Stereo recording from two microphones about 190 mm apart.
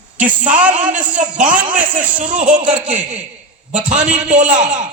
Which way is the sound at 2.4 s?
40° right (ahead or behind).